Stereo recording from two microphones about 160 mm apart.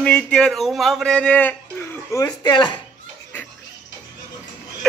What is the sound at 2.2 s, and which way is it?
Speech, 25° left (ahead or behind).